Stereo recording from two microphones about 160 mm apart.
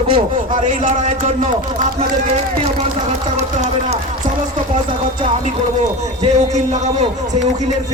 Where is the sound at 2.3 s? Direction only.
45° right (ahead or behind).